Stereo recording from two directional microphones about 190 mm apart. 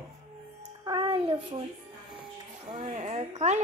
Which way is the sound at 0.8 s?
20° right (ahead or behind).